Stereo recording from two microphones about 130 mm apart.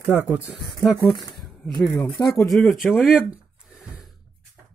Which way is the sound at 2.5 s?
Centre (ahead or behind).